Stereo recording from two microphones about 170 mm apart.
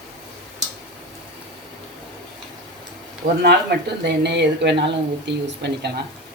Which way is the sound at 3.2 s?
60° right (ahead or behind).